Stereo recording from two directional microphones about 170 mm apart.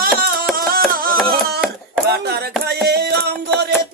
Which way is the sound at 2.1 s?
70° right (ahead or behind).